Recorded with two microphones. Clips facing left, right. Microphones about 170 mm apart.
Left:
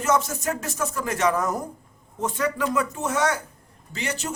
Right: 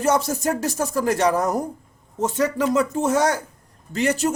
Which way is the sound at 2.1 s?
25° right (ahead or behind).